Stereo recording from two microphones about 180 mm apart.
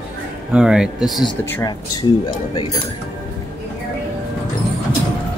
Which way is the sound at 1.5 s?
15° left (ahead or behind).